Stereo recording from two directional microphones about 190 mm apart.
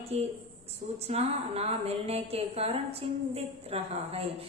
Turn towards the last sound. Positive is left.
turn(degrees=-30)  # may be behind; listen again after turning